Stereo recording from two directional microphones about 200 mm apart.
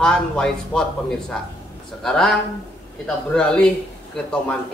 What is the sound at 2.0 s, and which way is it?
Speech, 5° left (ahead or behind).